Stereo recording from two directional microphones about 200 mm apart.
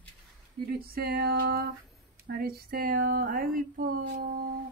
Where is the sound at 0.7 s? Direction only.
50° right (ahead or behind).